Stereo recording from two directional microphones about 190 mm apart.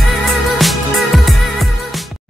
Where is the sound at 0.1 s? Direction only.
Centre (ahead or behind).